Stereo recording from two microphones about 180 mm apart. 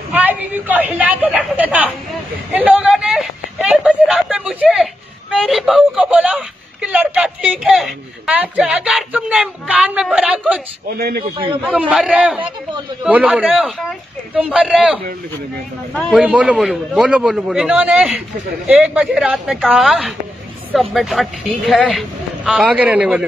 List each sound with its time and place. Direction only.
0.1 s a woman's voice: 10° right (ahead or behind)
2.5 s a sound: 10° right (ahead or behind)
5.3 s a woman's voice: centre (ahead or behind)
11.0 s a man's voice: 55° right (ahead or behind)
11.3 s a man's voice: 30° right (ahead or behind)
11.9 s speech: 5° right (ahead or behind)